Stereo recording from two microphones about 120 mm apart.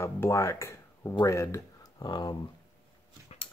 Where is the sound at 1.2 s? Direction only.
25° left (ahead or behind).